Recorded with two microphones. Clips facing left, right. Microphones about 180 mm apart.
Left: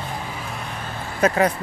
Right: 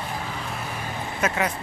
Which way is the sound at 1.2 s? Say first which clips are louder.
Left 7 dB; 35° left (ahead or behind).